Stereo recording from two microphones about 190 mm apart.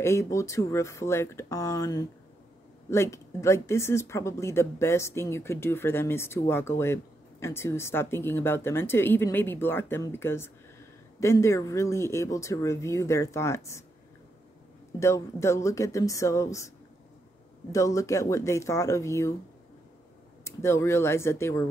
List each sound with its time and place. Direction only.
0.0 s speech: 15° left (ahead or behind)
15.0 s speech: 15° left (ahead or behind)
20.4 s speech: 15° left (ahead or behind)